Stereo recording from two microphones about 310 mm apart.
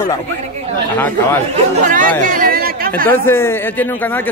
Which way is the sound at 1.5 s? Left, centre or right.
Right.